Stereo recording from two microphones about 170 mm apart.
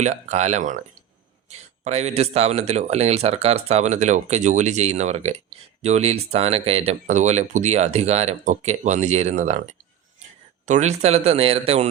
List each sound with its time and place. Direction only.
0.0 s speech: 45° right (ahead or behind)